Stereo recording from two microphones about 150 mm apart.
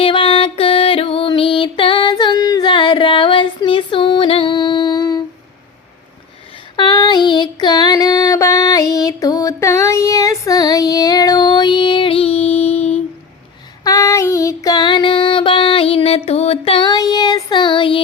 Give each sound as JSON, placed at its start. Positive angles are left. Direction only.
{"t": 0.0, "sound": "music", "side_deg": 35}
{"t": 6.7, "sound": "female singing", "side_deg": 30}
{"t": 13.8, "sound": "child singing", "side_deg": 20}